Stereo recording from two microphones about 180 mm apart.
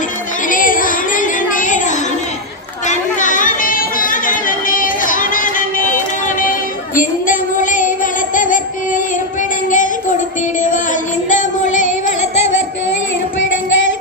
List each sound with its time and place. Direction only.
0.4 s child singing: 50° left (ahead or behind)
2.8 s chatter: 45° left (ahead or behind)
9.6 s child singing: 45° left (ahead or behind)
11.3 s music: 45° left (ahead or behind)